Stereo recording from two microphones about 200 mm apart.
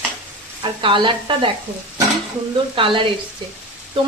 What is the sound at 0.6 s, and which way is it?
Speech, 25° right (ahead or behind).